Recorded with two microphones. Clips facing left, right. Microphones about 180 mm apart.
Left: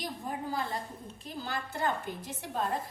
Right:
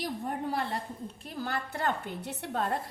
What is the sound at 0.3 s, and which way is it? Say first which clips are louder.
A woman's voice: right 1 dB; 65° right (ahead or behind).